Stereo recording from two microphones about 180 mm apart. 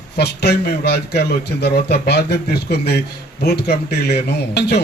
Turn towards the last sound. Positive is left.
turn(degrees=65)  # may be behind; listen again after turning